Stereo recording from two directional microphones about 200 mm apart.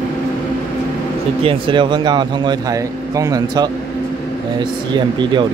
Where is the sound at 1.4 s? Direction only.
25° right (ahead or behind).